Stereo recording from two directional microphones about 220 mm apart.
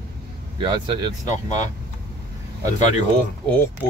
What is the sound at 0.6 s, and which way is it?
Speech, 20° right (ahead or behind).